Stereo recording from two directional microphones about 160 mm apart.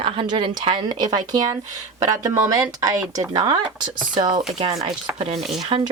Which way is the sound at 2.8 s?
20° right (ahead or behind).